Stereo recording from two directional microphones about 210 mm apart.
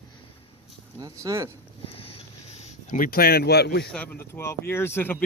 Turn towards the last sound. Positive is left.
turn(degrees=10)  # may be behind; listen again after turning